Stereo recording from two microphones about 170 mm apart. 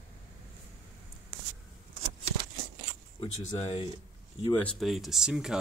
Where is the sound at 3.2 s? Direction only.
35° left (ahead or behind).